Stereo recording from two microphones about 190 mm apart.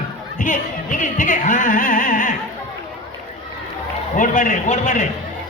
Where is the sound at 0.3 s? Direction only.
45° left (ahead or behind).